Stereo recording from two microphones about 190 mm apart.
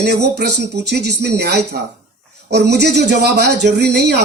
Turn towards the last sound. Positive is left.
turn(degrees=-60)  # may be behind; listen again after turning